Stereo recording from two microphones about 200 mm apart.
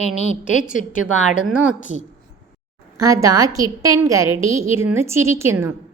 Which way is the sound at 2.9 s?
15° right (ahead or behind).